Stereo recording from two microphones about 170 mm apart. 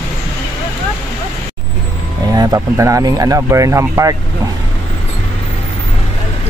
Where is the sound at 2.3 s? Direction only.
20° right (ahead or behind).